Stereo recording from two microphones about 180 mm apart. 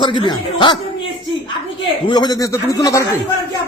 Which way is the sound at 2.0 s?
25° left (ahead or behind).